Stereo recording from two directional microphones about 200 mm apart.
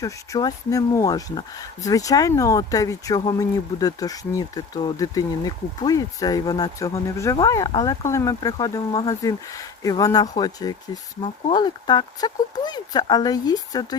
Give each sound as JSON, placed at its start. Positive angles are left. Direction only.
{"t": 0.0, "sound": "speech", "side_deg": 15}